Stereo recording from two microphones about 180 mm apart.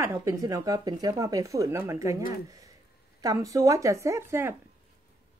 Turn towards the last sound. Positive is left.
turn(degrees=-15)  # may be behind; listen again after turning